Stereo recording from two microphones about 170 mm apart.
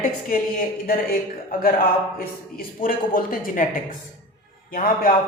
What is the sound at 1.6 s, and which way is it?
A man's voice, 60° left (ahead or behind).